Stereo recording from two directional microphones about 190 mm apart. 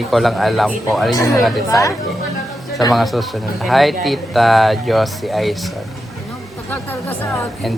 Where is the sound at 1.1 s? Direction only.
20° left (ahead or behind).